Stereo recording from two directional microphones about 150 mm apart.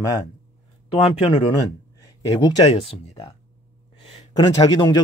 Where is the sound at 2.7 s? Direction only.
40° left (ahead or behind).